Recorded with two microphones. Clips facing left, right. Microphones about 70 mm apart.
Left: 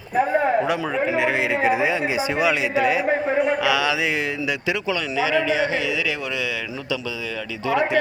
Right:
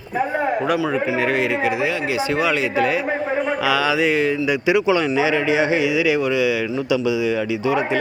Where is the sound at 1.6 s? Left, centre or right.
Left; by 4.9 s centre.